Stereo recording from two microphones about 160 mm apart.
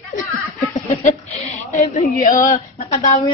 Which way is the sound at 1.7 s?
55° left (ahead or behind).